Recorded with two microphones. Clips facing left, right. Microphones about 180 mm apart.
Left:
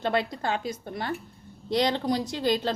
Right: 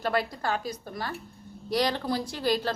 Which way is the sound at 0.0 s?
20° left (ahead or behind).